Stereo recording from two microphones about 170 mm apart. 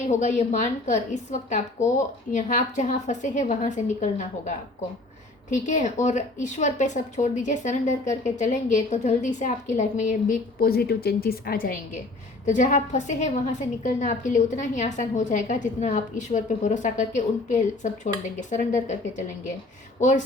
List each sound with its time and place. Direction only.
0.1 s a woman's voice: 45° left (ahead or behind)